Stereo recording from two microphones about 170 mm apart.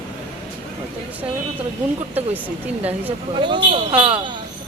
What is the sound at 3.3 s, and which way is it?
Speech, 30° right (ahead or behind).